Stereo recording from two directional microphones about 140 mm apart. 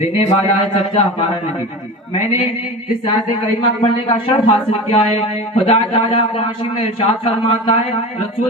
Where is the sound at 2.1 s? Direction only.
50° left (ahead or behind).